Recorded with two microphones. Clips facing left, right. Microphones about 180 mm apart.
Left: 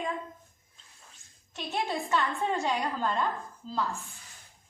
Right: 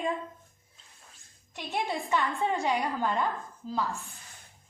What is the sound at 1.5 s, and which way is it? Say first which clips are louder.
A woman's voice: even; 15° right (ahead or behind).